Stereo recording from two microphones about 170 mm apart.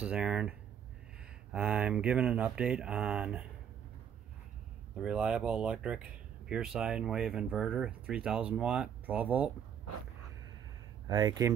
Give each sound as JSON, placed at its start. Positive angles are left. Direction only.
{"t": 0.0, "sound": "speech", "side_deg": -5}
{"t": 5.0, "sound": "speech", "side_deg": -5}
{"t": 11.1, "sound": "speech", "side_deg": -25}